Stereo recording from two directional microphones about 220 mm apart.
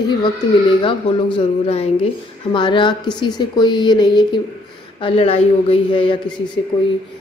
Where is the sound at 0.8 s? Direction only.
25° left (ahead or behind).